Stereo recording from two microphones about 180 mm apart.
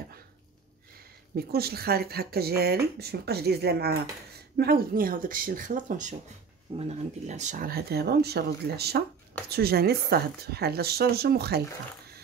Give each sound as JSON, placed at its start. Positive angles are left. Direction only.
{"t": 1.3, "sound": "speech", "side_deg": -60}